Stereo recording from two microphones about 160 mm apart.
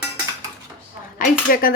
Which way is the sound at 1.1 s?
65° left (ahead or behind).